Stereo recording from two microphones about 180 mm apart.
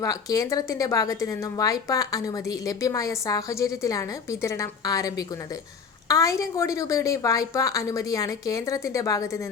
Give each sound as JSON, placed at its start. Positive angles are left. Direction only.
{"t": 0.0, "sound": "a woman's voice", "side_deg": 20}